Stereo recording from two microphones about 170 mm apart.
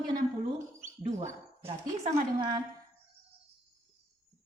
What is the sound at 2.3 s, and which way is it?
Speech, 25° right (ahead or behind).